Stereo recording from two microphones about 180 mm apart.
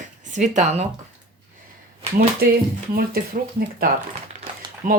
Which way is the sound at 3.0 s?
55° right (ahead or behind).